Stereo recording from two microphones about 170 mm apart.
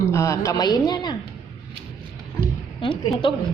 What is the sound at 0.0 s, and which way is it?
A woman's voice, 15° left (ahead or behind).